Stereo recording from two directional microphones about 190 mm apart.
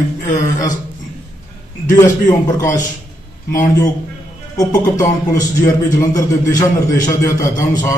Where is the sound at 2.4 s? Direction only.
20° left (ahead or behind).